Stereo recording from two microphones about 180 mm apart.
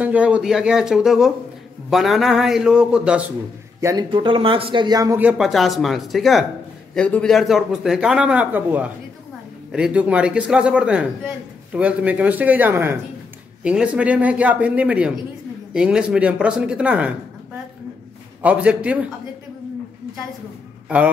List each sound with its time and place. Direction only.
0.0 s speech: 5° right (ahead or behind)
3.8 s speech: 25° right (ahead or behind)
5.2 s speech: centre (ahead or behind)
18.4 s speech: 5° right (ahead or behind)